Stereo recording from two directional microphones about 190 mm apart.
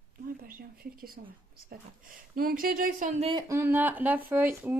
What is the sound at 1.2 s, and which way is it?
Speech, 45° right (ahead or behind).